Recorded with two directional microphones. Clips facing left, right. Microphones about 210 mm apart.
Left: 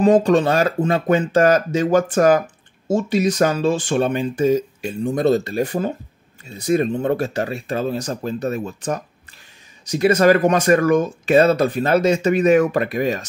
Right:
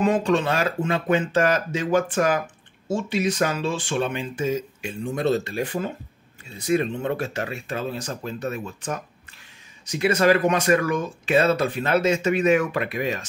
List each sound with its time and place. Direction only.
0.0 s speech: 35° left (ahead or behind)